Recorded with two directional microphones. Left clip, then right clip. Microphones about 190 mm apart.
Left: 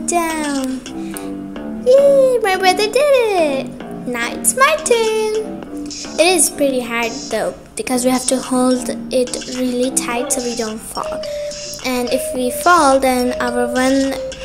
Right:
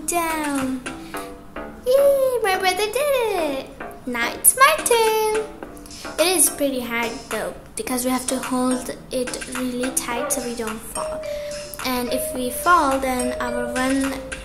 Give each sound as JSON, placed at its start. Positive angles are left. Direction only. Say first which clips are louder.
{"t": 0.1, "sound": "music", "louder": "left 4 dB", "side_deg": 20}
{"t": 1.9, "sound": "a child's voice", "louder": "left 6 dB", "side_deg": 20}